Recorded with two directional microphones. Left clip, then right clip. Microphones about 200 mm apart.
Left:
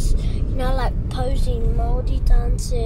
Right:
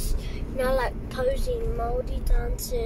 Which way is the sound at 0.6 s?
15° left (ahead or behind).